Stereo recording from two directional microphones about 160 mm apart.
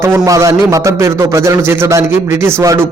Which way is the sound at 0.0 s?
15° right (ahead or behind).